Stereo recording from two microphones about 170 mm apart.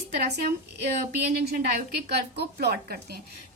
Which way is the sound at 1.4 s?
65° right (ahead or behind).